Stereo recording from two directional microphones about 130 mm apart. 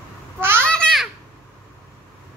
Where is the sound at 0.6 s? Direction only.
5° left (ahead or behind).